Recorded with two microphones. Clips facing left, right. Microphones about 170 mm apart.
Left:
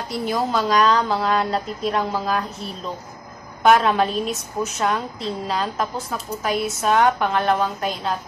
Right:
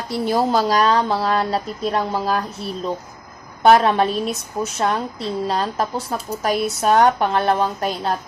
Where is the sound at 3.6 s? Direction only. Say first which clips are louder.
Right 2 dB; 35° right (ahead or behind).